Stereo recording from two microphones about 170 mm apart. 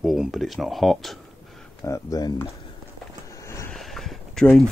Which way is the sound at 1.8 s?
20° left (ahead or behind).